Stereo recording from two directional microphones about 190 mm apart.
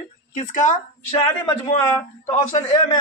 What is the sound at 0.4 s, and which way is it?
Speech, 45° left (ahead or behind).